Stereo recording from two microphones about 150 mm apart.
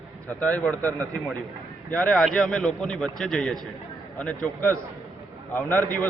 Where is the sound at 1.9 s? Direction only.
5° left (ahead or behind).